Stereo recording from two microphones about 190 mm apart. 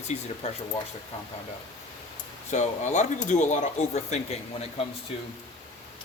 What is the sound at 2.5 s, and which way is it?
Speech, 40° left (ahead or behind).